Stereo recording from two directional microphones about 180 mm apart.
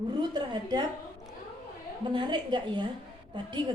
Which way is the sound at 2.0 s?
25° right (ahead or behind).